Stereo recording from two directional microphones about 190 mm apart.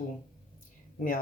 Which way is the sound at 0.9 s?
45° left (ahead or behind).